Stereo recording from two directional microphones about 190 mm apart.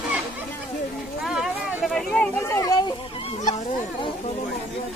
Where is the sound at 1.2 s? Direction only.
Centre (ahead or behind).